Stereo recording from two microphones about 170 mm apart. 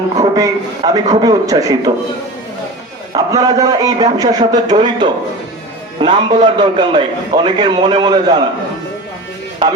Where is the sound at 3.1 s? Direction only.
20° right (ahead or behind).